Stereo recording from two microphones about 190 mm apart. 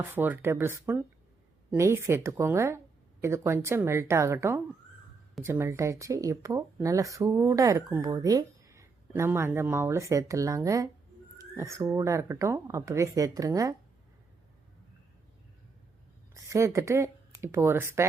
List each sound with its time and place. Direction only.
0.0 s speech: 10° right (ahead or behind)
16.3 s speech: 15° right (ahead or behind)